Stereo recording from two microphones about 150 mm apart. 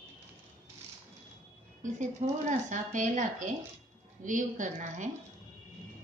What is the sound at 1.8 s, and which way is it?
Speech, 55° right (ahead or behind).